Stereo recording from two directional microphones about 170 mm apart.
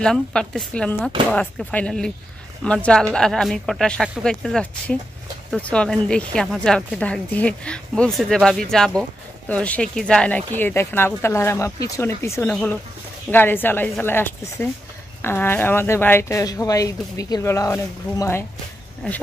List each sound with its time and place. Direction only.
0.0 s speech: 5° left (ahead or behind)
19.0 s speech: 5° left (ahead or behind)